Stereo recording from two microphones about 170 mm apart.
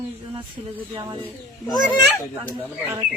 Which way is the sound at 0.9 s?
25° right (ahead or behind).